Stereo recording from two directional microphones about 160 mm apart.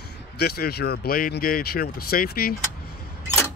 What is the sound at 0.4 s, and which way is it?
Speech, 75° left (ahead or behind).